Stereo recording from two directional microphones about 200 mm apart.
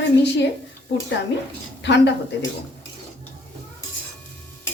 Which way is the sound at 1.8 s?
60° left (ahead or behind).